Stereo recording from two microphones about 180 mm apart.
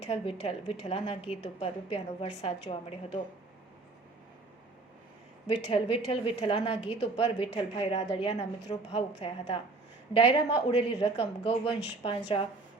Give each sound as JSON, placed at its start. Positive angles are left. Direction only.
{"t": 0.0, "sound": "a woman's voice", "side_deg": 35}
{"t": 5.5, "sound": "a woman's voice", "side_deg": 30}